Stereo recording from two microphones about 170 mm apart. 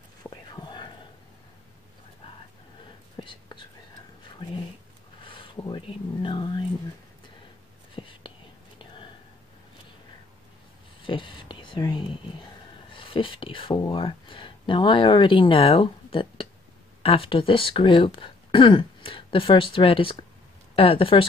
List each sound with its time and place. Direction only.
0.2 s whispering: 25° left (ahead or behind)
3.2 s whispering: 30° left (ahead or behind)
5.2 s a sound: 30° left (ahead or behind)
7.9 s whispering: 30° left (ahead or behind)
11.0 s whispering: 30° left (ahead or behind)
12.9 s speech: 30° left (ahead or behind)